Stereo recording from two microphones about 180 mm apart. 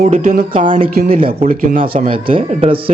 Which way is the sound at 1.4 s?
50° right (ahead or behind).